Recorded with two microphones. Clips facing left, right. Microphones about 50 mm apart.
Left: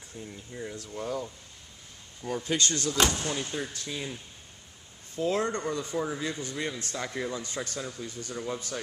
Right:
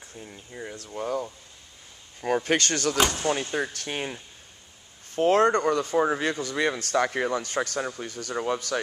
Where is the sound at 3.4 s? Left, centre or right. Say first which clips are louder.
Right 5 dB; right.